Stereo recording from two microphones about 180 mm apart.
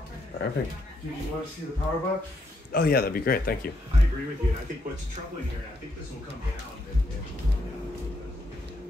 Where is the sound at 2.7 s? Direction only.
60° left (ahead or behind).